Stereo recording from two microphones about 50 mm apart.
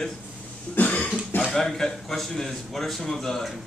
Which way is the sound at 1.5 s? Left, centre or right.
Centre.